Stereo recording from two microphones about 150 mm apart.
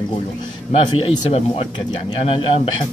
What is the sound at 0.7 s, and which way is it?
Speech, 40° left (ahead or behind).